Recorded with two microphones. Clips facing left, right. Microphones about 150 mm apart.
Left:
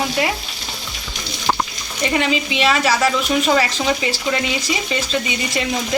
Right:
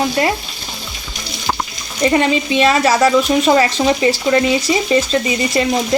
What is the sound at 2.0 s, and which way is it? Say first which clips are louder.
A woman's voice: right 5 dB; 35° right (ahead or behind).